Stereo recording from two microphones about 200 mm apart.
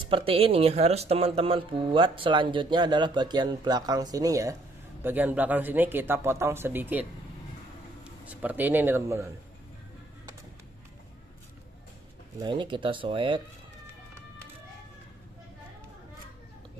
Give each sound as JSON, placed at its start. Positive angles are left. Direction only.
{"t": 0.1, "sound": "a man's voice", "side_deg": -25}
{"t": 12.4, "sound": "speech", "side_deg": -25}